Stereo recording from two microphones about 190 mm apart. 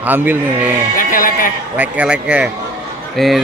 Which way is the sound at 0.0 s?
10° right (ahead or behind).